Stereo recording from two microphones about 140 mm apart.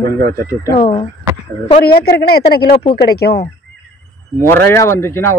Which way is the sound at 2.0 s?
90° left.